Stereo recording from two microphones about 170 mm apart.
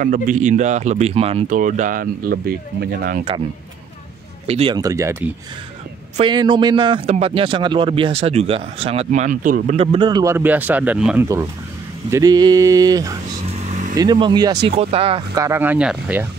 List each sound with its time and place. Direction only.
0.0 s speech: 50° right (ahead or behind)
1.6 s speech: 50° right (ahead or behind)
2.3 s speech: 70° right (ahead or behind)
4.5 s a man's voice: 35° right (ahead or behind)
4.7 s speech: 20° right (ahead or behind)
6.1 s a man's voice: 30° right (ahead or behind); by 9.8 s 50° right (ahead or behind)
9.8 s a sound: 25° right (ahead or behind)
10.3 s speech: 10° right (ahead or behind)
12.1 s a sound: 20° right (ahead or behind)
13.5 s vehicle: 40° right (ahead or behind)
13.9 s a sound: 25° right (ahead or behind)
14.8 s a man's voice: 35° right (ahead or behind)
15.3 s speech: 15° right (ahead or behind)